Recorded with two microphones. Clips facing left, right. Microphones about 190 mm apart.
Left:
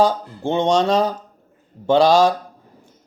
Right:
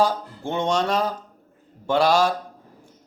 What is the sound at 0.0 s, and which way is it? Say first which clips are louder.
Speech: left 4 dB; 25° left (ahead or behind).